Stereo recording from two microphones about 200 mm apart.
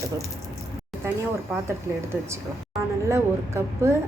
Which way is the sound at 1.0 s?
10° right (ahead or behind).